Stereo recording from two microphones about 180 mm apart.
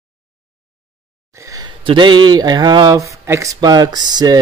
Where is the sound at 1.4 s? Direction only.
20° right (ahead or behind).